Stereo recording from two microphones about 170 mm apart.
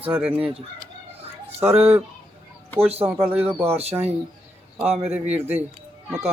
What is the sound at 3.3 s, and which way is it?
Speech, 10° right (ahead or behind).